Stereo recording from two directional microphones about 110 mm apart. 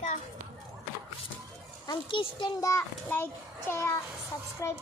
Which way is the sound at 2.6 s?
30° left (ahead or behind).